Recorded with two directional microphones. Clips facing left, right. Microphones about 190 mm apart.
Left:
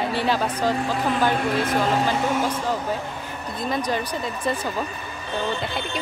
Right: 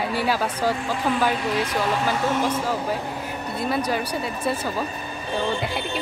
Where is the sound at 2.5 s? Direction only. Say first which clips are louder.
Right 1 dB; 10° right (ahead or behind).